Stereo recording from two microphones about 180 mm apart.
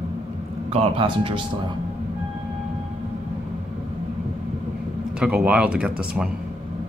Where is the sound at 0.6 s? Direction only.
30° right (ahead or behind).